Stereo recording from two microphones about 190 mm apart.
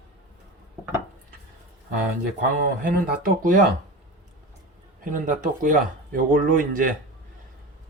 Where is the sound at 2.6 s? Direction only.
45° right (ahead or behind).